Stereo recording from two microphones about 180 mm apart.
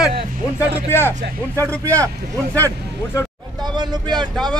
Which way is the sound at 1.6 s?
10° left (ahead or behind).